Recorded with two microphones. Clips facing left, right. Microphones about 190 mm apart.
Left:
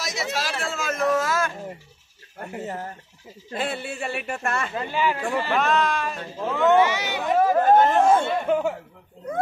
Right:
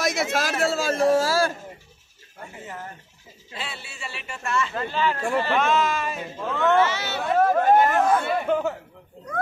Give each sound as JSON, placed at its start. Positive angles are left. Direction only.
{"t": 0.0, "sound": "speech", "side_deg": -50}
{"t": 2.6, "sound": "speech", "side_deg": 40}
{"t": 3.5, "sound": "speech", "side_deg": 50}
{"t": 4.7, "sound": "speech", "side_deg": 15}
{"t": 5.6, "sound": "speech", "side_deg": 0}
{"t": 6.3, "sound": "speech", "side_deg": 15}
{"t": 7.6, "sound": "speech", "side_deg": -10}
{"t": 8.0, "sound": "speech", "side_deg": 25}
{"t": 8.5, "sound": "speech", "side_deg": 10}